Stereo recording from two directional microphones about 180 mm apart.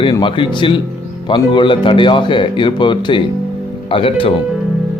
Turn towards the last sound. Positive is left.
turn(degrees=30)  # may be behind; listen again after turning